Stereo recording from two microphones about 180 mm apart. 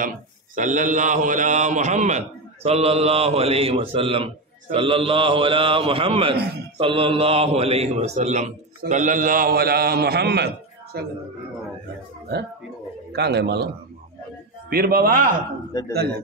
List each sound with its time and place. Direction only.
0.6 s a man's voice: 45° right (ahead or behind); by 11.1 s 65° right (ahead or behind)
13.1 s a man's voice: 70° right (ahead or behind)
14.7 s a man's voice: 55° right (ahead or behind)
15.7 s a man's voice: 20° left (ahead or behind)